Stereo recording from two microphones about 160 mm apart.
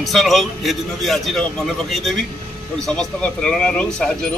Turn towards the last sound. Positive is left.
turn(degrees=5)  # may be behind; listen again after turning